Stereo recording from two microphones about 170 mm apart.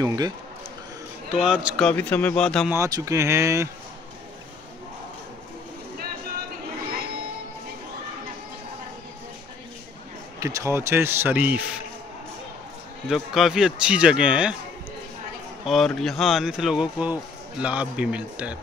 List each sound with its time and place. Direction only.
0.0 s speech: 20° right (ahead or behind)
1.3 s speech: 5° right (ahead or behind)
1.9 s speech: 10° left (ahead or behind)
2.8 s a man's voice: 20° right (ahead or behind)
10.4 s a man's voice: 15° right (ahead or behind)
13.1 s speech: centre (ahead or behind)
15.6 s speech: centre (ahead or behind)